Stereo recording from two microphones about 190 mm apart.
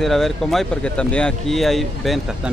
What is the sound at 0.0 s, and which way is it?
Speech, centre (ahead or behind).